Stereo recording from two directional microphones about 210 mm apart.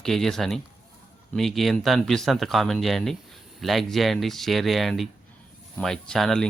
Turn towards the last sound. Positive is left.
turn(degrees=0)  # may be behind; listen again after turning